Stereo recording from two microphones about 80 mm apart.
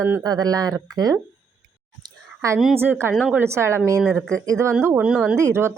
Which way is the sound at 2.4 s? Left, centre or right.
Right.